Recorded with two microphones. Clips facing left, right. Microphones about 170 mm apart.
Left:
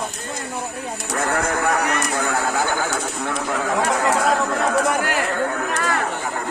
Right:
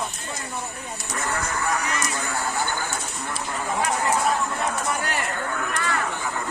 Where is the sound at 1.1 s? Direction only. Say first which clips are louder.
Left 7 dB; 60° left (ahead or behind); by 5.0 s 80° left.